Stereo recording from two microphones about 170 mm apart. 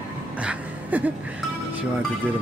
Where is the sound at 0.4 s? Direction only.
10° right (ahead or behind).